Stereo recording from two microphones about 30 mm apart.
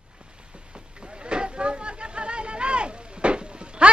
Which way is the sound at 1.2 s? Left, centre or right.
Right.